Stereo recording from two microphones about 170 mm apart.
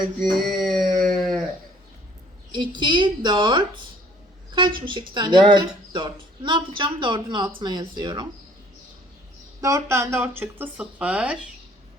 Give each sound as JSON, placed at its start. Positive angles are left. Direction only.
{"t": 0.0, "sound": "a sound", "side_deg": 0}
{"t": 1.1, "sound": "livestock", "side_deg": 0}
{"t": 2.5, "sound": "speech", "side_deg": -25}
{"t": 9.6, "sound": "speech", "side_deg": -20}